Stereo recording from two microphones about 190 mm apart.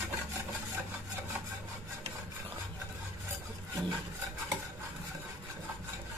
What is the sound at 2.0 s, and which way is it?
Rub, 30° right (ahead or behind).